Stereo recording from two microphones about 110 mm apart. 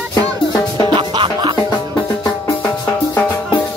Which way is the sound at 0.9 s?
45° right (ahead or behind).